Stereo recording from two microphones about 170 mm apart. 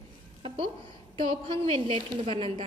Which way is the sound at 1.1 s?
30° right (ahead or behind).